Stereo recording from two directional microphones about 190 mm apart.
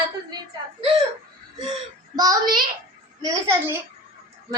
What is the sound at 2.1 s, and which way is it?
A child's voice, 20° right (ahead or behind).